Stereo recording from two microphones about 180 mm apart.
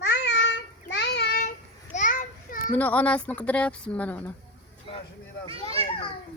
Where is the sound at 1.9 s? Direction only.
45° left (ahead or behind).